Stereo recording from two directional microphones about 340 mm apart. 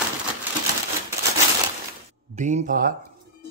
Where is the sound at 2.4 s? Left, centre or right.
Right.